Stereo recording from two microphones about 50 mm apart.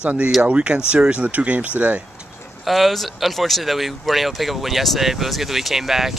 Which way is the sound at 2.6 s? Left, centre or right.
Centre.